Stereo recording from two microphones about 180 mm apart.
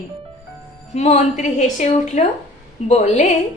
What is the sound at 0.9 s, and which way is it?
A woman's voice, 40° left (ahead or behind).